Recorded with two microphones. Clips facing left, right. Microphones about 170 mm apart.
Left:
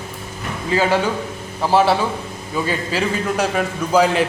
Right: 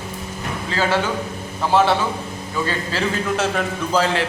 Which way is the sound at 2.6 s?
15° left (ahead or behind).